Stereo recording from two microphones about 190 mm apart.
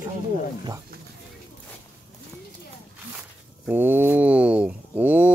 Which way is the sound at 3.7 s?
10° right (ahead or behind).